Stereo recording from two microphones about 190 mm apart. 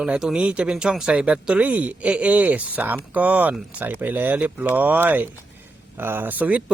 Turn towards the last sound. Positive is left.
turn(degrees=-5)  # may be behind; listen again after turning